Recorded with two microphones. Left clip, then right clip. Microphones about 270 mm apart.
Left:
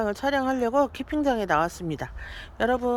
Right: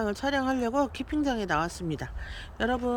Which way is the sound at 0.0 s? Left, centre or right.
Centre.